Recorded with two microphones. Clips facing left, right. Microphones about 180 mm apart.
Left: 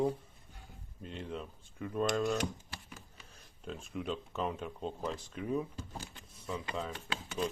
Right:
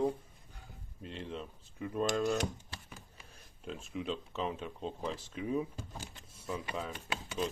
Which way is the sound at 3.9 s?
Centre (ahead or behind).